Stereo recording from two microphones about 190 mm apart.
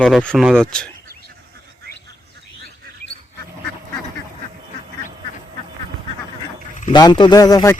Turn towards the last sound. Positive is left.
turn(degrees=20)  # may be behind; listen again after turning